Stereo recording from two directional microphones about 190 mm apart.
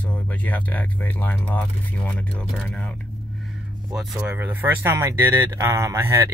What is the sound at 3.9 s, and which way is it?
Speech, 10° right (ahead or behind).